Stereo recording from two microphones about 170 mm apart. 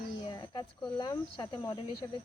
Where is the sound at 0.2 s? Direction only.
25° left (ahead or behind).